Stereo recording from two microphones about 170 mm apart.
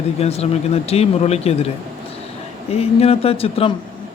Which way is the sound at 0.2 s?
35° left (ahead or behind).